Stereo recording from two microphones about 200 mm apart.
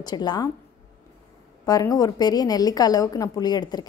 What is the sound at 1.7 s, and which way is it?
A woman's voice, 20° left (ahead or behind).